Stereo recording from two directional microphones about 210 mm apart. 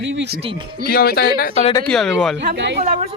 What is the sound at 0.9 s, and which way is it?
Speech, 45° left (ahead or behind).